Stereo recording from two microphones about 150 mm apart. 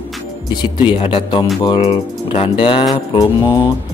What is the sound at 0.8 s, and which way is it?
Mantra, 35° left (ahead or behind).